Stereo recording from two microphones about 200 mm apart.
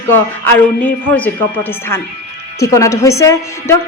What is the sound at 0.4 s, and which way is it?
Speech, 10° left (ahead or behind).